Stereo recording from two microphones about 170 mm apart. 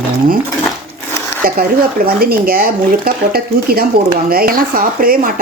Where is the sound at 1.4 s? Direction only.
60° right (ahead or behind).